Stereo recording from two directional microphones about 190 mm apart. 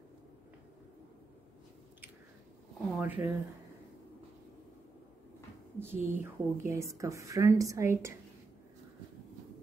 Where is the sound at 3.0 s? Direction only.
10° right (ahead or behind).